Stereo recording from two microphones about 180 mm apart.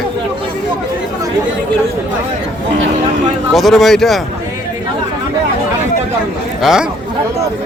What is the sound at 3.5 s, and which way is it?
Speech, centre (ahead or behind).